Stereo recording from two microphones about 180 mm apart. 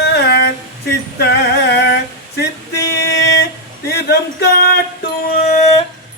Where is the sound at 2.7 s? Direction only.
65° left (ahead or behind).